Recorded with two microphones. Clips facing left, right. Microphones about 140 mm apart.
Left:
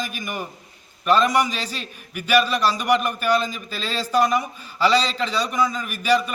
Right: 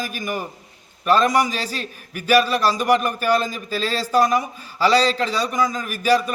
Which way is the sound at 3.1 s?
40° right (ahead or behind).